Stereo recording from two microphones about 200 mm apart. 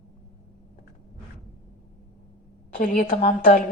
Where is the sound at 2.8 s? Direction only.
45° left (ahead or behind).